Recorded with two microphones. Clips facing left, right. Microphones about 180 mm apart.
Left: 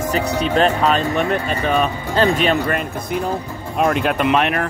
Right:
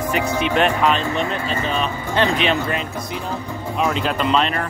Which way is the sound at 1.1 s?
55° left (ahead or behind).